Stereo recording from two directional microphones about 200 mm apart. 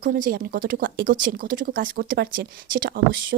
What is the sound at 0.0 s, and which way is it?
Speech, 45° right (ahead or behind).